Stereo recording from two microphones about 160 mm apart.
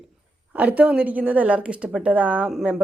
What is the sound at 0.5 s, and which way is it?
A woman's voice, 10° right (ahead or behind).